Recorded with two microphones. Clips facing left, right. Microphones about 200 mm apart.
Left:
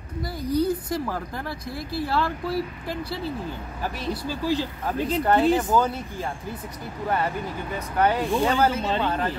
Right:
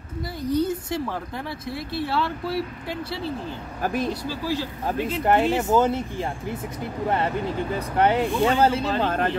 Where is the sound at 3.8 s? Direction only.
50° right (ahead or behind).